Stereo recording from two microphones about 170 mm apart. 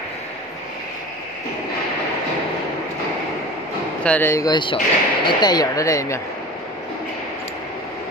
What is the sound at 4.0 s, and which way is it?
Speech, 10° left (ahead or behind).